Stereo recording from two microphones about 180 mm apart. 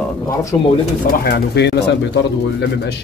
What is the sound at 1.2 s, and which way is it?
Speech, 65° left (ahead or behind).